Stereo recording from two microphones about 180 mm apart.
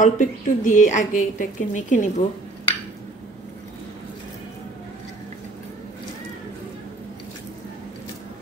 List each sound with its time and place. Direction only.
0.0 s a woman's voice: 45° left (ahead or behind)